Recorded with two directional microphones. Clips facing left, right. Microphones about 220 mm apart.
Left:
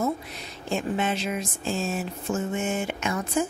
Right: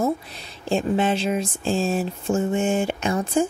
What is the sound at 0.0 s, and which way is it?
Speech, 30° right (ahead or behind).